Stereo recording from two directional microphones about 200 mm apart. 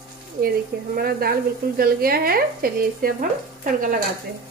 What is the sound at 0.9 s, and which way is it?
Frying, 50° right (ahead or behind).